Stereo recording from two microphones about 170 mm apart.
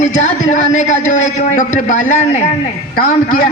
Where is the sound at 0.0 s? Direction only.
45° left (ahead or behind).